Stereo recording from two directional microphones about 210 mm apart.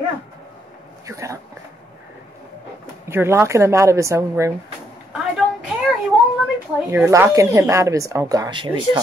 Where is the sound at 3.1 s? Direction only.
10° right (ahead or behind).